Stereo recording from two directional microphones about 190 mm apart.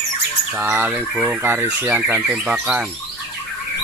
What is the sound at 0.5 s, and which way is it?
Speech, 10° right (ahead or behind).